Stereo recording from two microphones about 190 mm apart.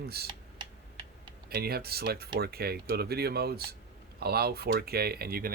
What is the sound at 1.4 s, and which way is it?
Speech, 55° right (ahead or behind).